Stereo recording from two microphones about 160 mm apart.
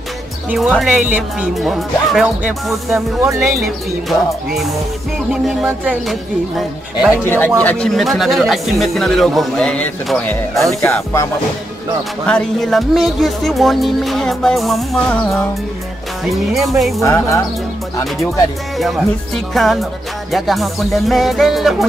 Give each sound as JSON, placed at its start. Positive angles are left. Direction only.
{"t": 0.5, "sound": "speech", "side_deg": 0}
{"t": 5.3, "sound": "speech", "side_deg": -5}
{"t": 7.2, "sound": "speech", "side_deg": 10}
{"t": 10.8, "sound": "music", "side_deg": 15}
{"t": 12.3, "sound": "speech", "side_deg": 5}
{"t": 16.3, "sound": "speech", "side_deg": 0}
{"t": 17.0, "sound": "speech", "side_deg": 20}
{"t": 18.8, "sound": "speech", "side_deg": 0}